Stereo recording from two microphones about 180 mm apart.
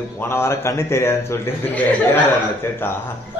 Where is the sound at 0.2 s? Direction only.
15° left (ahead or behind).